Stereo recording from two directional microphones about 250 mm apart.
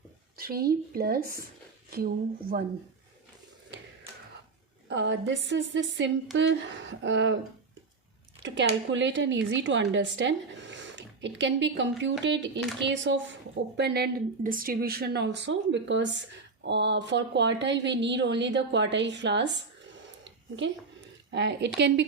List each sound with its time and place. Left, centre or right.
0.3 s a woman's voice: right
4.9 s a woman's voice: right
8.4 s a woman's voice: right
20.2 s a sound: right
21.2 s a woman's voice: right